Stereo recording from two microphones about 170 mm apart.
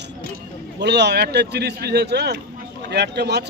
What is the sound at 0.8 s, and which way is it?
A man's voice, 85° right.